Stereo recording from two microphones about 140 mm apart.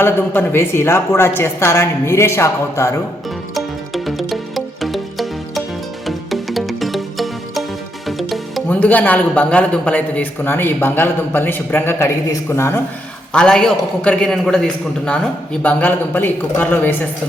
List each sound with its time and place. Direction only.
0.0 s a man's voice: 15° left (ahead or behind)
3.5 s music: centre (ahead or behind)
8.7 s a man's voice: 10° left (ahead or behind)
13.3 s a man's voice: 5° left (ahead or behind)